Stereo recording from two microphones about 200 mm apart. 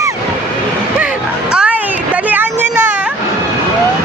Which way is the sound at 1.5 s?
5° right (ahead or behind).